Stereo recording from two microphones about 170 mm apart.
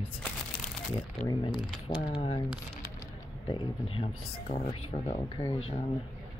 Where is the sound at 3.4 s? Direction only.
30° left (ahead or behind).